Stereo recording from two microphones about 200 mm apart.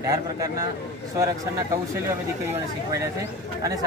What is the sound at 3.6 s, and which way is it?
Speech, 20° right (ahead or behind).